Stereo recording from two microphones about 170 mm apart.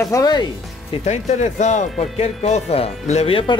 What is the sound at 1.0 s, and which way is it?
Speech, 40° left (ahead or behind).